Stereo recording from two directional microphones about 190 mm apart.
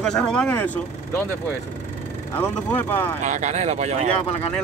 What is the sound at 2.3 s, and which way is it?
Speech, 10° left (ahead or behind).